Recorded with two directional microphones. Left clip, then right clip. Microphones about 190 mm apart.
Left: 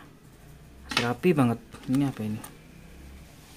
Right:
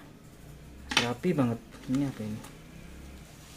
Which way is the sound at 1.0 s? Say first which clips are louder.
Left 5 dB; 35° left (ahead or behind).